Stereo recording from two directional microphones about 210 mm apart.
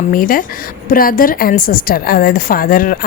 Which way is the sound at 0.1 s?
40° left (ahead or behind).